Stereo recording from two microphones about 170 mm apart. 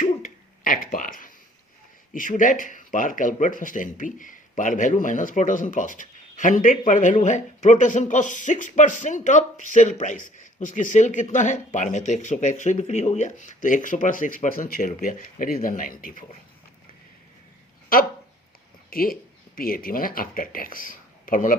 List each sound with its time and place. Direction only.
0.0 s a sound: 55° left (ahead or behind)
2.1 s speech: 50° left (ahead or behind)
17.9 s speech: 60° left (ahead or behind)